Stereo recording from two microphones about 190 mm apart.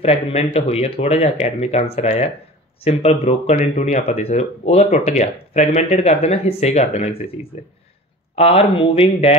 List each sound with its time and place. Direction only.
0.0 s speech: 35° left (ahead or behind)
8.4 s speech: 30° left (ahead or behind)